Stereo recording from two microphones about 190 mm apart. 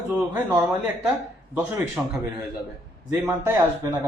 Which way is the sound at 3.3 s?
15° right (ahead or behind).